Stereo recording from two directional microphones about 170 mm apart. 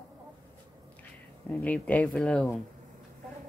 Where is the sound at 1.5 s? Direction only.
10° left (ahead or behind).